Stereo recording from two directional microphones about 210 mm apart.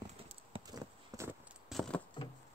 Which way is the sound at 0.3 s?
20° right (ahead or behind).